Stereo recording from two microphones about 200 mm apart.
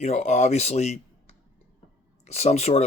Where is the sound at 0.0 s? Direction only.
35° left (ahead or behind).